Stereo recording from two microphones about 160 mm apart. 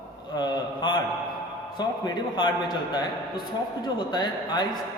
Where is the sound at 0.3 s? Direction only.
25° left (ahead or behind).